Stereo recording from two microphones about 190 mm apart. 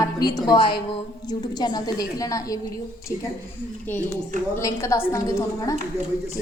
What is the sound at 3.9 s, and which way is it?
A woman's voice, 10° left (ahead or behind).